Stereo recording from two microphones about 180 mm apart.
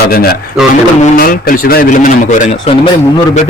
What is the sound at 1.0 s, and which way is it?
Speech, 50° left (ahead or behind).